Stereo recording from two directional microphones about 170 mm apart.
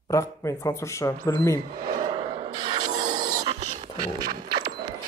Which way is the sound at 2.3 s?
25° right (ahead or behind).